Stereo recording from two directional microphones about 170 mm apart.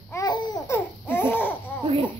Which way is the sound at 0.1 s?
25° left (ahead or behind).